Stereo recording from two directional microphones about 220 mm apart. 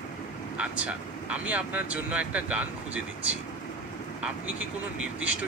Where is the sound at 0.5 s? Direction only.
5° right (ahead or behind).